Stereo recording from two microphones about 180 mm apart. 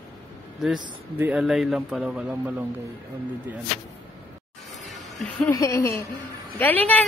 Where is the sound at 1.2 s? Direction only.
5° right (ahead or behind).